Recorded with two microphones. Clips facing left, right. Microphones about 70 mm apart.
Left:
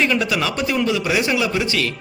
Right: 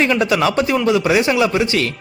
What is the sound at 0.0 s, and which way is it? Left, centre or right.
A man's voice, right.